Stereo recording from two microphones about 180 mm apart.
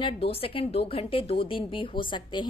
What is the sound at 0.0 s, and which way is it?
A woman's voice, 30° left (ahead or behind).